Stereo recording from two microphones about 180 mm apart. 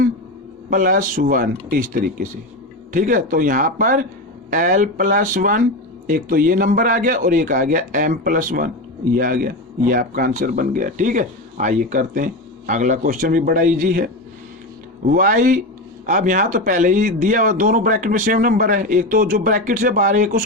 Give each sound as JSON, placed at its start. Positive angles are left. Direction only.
{"t": 0.7, "sound": "speech", "side_deg": -50}